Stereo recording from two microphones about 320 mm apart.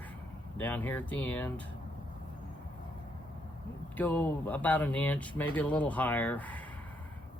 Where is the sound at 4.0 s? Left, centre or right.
Centre.